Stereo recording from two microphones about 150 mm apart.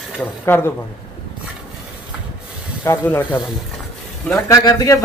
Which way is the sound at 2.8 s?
15° left (ahead or behind).